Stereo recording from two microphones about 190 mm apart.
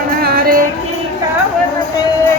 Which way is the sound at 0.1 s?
50° right (ahead or behind).